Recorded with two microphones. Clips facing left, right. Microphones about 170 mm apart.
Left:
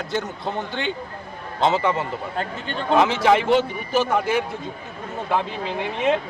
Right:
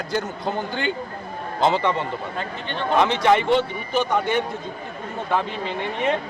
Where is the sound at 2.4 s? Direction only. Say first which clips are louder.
Left 1 dB; 45° left (ahead or behind).